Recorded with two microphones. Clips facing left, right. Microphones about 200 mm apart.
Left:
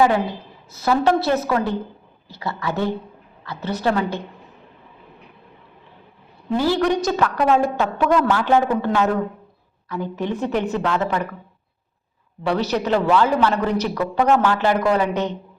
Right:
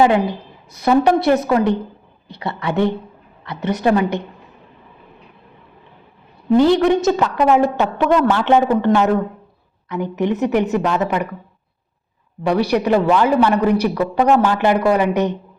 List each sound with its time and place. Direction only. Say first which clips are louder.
0.8 s a woman's voice: right 4 dB; 20° right (ahead or behind)
6.6 s a woman's voice: right 5 dB; 20° right (ahead or behind)
9.9 s a woman's voice: right 5 dB; 20° right (ahead or behind)
12.4 s a woman's voice: right 4 dB; 15° right (ahead or behind)